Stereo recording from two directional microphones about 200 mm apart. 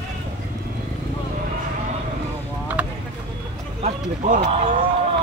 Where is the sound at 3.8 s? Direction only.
35° right (ahead or behind).